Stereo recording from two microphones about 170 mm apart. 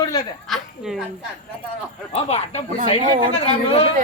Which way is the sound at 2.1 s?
35° left (ahead or behind).